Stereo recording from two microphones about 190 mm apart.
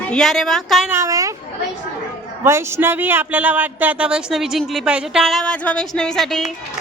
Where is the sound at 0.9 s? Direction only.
15° right (ahead or behind).